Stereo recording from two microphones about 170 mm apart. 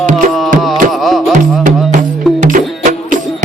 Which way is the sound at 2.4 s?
50° right (ahead or behind).